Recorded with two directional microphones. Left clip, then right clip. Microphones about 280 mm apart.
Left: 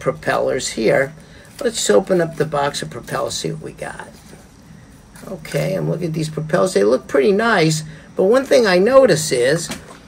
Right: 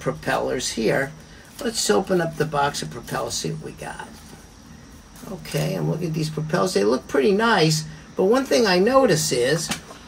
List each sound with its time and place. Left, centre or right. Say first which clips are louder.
0.0 s speech: left 5 dB; centre
5.5 s speech: left 6 dB; centre